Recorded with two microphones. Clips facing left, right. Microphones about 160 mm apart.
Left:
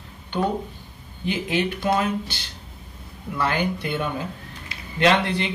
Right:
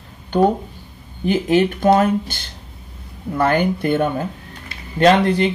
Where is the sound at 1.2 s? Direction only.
45° right (ahead or behind).